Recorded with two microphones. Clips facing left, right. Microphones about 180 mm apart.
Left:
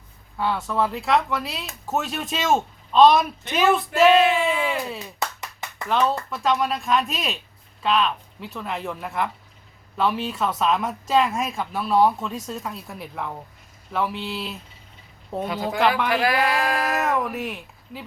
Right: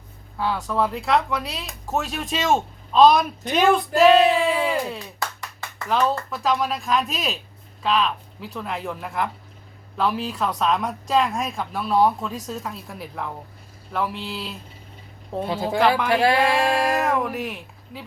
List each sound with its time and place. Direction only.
0.3 s speech: centre (ahead or behind)
5.2 s clapping: 20° left (ahead or behind)
5.9 s speech: centre (ahead or behind)
15.4 s speech: 30° right (ahead or behind)
16.9 s speech: centre (ahead or behind)